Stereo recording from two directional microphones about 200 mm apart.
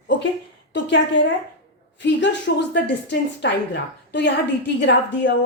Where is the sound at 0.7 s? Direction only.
65° left (ahead or behind).